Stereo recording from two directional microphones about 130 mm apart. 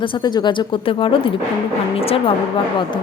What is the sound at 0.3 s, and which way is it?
A woman's voice, 40° left (ahead or behind).